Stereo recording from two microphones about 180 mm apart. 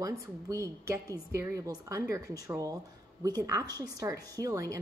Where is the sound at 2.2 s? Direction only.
60° left (ahead or behind).